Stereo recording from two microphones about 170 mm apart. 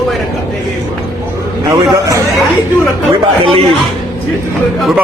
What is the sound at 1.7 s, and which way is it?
Speech, 20° right (ahead or behind).